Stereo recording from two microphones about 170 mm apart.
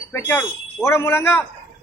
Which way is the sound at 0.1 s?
10° left (ahead or behind).